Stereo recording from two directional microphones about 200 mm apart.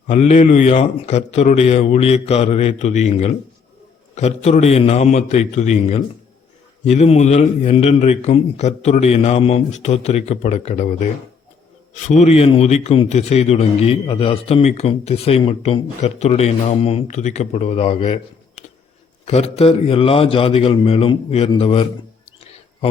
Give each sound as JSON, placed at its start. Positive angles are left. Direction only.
{"t": 0.1, "sound": "a man's voice", "side_deg": 35}